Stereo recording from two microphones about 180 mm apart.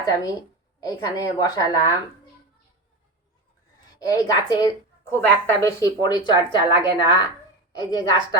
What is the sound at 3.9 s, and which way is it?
A woman's voice, 20° left (ahead or behind).